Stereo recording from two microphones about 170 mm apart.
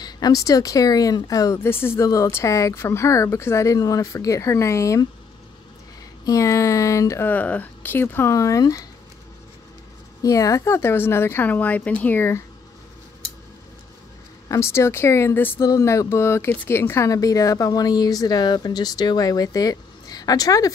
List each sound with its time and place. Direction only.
0.0 s speech: 20° left (ahead or behind)
6.2 s speech: 20° left (ahead or behind)
10.2 s speech: 20° left (ahead or behind)
14.5 s speech: 15° left (ahead or behind)